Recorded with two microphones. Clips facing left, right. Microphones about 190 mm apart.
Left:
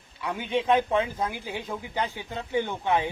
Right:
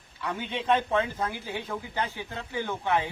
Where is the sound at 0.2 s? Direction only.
15° left (ahead or behind).